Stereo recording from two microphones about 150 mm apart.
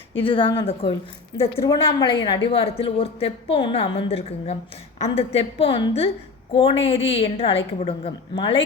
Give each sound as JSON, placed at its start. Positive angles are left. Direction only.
{"t": 0.2, "sound": "a woman's voice", "side_deg": 35}
{"t": 1.5, "sound": "a woman's voice", "side_deg": 25}